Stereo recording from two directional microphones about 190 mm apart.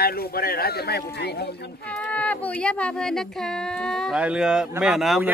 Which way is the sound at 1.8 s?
5° left (ahead or behind).